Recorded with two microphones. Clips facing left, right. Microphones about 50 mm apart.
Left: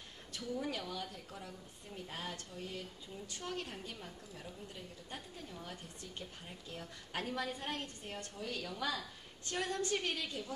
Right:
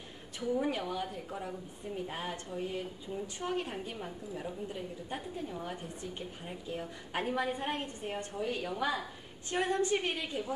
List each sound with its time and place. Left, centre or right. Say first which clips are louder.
0.4 s a woman's voice: right 8 dB; right